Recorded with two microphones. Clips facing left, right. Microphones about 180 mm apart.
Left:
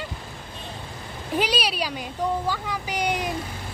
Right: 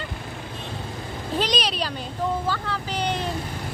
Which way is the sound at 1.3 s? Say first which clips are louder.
Left 1 dB; 10° left (ahead or behind).